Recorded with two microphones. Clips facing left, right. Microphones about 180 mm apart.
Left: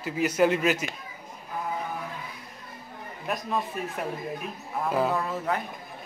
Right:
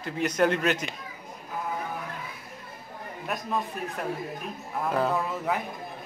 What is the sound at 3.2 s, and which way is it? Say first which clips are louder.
Speech: left 1 dB; centre (ahead or behind).